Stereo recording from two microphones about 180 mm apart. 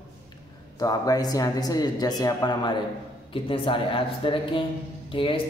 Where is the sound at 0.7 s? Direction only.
20° left (ahead or behind).